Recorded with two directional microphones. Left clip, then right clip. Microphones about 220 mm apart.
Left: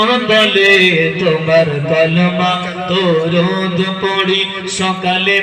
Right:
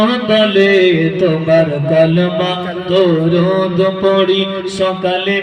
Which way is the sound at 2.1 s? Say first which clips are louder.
Left 1 dB; 60° right (ahead or behind).